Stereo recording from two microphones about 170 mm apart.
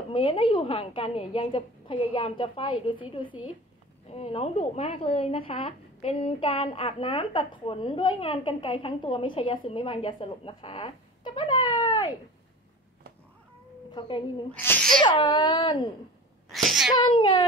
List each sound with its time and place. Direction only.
0.1 s speech: 30° left (ahead or behind)
13.9 s speech: 30° left (ahead or behind)
14.5 s a child's voice: 10° left (ahead or behind)
15.0 s speech: 30° left (ahead or behind)
16.5 s speech: centre (ahead or behind)
17.0 s speech: 25° left (ahead or behind)